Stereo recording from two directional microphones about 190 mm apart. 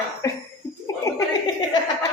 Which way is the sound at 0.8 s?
15° left (ahead or behind).